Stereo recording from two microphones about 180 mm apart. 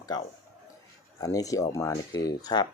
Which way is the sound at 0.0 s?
20° left (ahead or behind).